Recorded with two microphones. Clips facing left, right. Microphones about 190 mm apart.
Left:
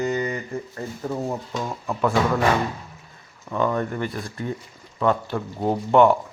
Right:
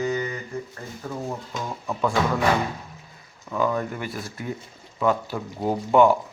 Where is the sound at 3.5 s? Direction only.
5° right (ahead or behind).